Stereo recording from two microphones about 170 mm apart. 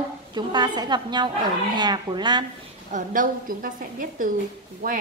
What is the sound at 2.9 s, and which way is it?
A woman's voice, 55° right (ahead or behind).